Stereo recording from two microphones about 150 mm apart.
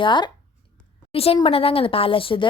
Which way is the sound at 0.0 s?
30° left (ahead or behind).